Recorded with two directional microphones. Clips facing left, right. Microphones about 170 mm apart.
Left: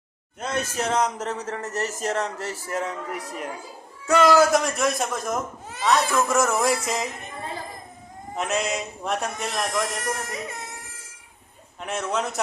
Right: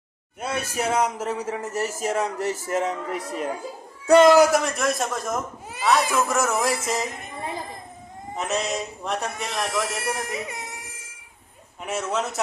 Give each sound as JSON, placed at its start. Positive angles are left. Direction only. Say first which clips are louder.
{"t": 0.3, "sound": "a man's voice", "louder": "even", "side_deg": -10}
{"t": 4.5, "sound": "speech", "louder": "even", "side_deg": 0}
{"t": 8.4, "sound": "speech", "louder": "even", "side_deg": 0}
{"t": 11.9, "sound": "speech", "louder": "even", "side_deg": -5}